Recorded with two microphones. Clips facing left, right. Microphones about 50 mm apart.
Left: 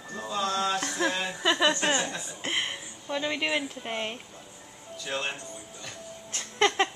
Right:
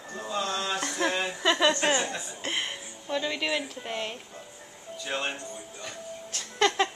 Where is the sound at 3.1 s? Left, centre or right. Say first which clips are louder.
Even; centre.